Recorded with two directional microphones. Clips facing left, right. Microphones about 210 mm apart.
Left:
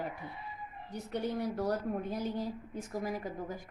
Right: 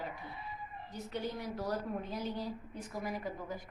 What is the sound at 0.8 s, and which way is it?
A woman's voice, 65° left (ahead or behind).